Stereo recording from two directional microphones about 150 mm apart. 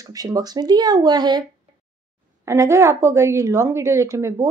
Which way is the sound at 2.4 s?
20° right (ahead or behind).